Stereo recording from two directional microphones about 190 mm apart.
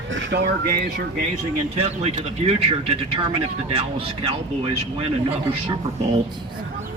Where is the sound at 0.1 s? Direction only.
85° right.